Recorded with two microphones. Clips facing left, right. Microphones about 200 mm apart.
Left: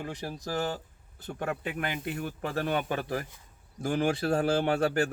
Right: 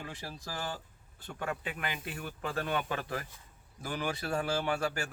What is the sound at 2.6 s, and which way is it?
Speech, 35° left (ahead or behind).